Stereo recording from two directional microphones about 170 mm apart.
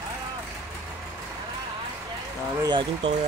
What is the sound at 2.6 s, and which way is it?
Speech, 25° right (ahead or behind).